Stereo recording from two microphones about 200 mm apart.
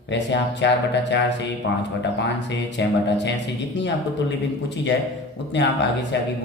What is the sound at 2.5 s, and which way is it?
Speech, 60° left (ahead or behind).